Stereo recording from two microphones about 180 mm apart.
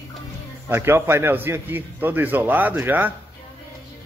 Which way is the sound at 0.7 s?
15° right (ahead or behind).